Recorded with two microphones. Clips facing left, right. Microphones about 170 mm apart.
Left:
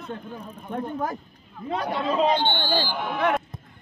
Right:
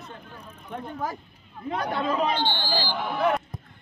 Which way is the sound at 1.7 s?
25° left (ahead or behind).